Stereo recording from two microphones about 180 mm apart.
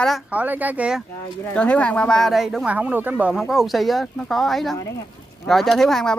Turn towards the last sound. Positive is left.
turn(degrees=0)  # may be behind; listen again after turning